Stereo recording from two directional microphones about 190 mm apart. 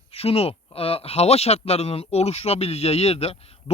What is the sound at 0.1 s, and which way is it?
Speech, 30° left (ahead or behind).